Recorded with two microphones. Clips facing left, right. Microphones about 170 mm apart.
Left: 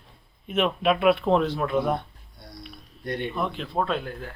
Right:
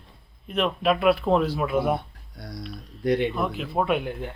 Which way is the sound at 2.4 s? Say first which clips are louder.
Right 6 dB; 90° right.